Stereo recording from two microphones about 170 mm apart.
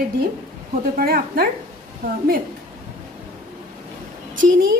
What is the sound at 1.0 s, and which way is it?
Speech, 60° right (ahead or behind).